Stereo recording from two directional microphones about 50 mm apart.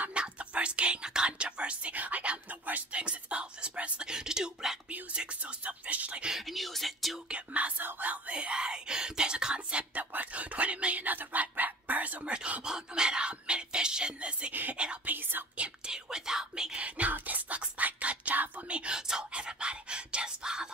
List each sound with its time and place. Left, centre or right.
0.1 s whispering: right
4.8 s whispering: right
5.4 s music: right
6.3 s speech: centre
7.2 s whispering: right
10.1 s dog: right
12.4 s a sound: right
12.6 s music: centre
14.5 s whispering: right
15.5 s whispering: right